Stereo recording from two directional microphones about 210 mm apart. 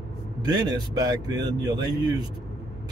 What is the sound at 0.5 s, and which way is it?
Speech, 20° right (ahead or behind).